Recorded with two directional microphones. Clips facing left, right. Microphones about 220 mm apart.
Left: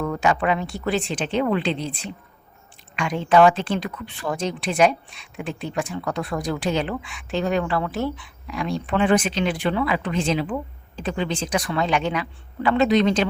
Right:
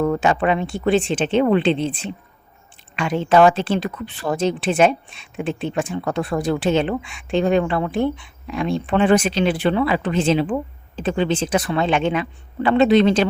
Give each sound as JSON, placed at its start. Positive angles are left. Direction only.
{"t": 0.0, "sound": "speech", "side_deg": -30}
{"t": 2.9, "sound": "speech", "side_deg": -30}